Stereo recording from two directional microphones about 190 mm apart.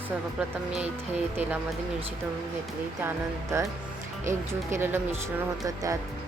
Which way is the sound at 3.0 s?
15° right (ahead or behind).